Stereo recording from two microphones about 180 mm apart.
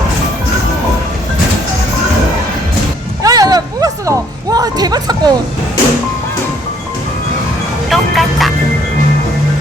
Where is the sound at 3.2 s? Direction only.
20° right (ahead or behind).